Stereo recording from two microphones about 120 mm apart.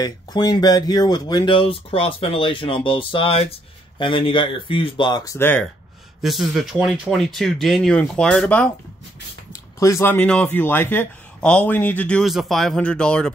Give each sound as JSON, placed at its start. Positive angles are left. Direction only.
{"t": 0.0, "sound": "speech", "side_deg": 35}
{"t": 6.2, "sound": "speech", "side_deg": 0}
{"t": 9.5, "sound": "speech", "side_deg": 25}
{"t": 12.3, "sound": "speech", "side_deg": 0}